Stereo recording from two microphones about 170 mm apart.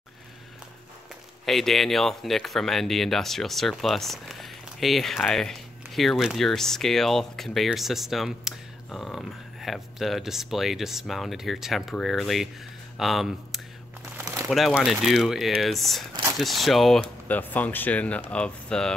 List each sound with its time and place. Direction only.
1.4 s speech: centre (ahead or behind)
14.2 s crumpling: 15° right (ahead or behind)
14.5 s speech: centre (ahead or behind)